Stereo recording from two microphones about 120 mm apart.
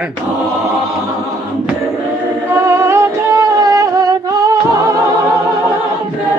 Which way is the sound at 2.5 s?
20° right (ahead or behind).